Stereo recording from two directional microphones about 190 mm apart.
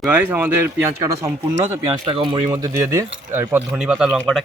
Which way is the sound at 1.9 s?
25° right (ahead or behind).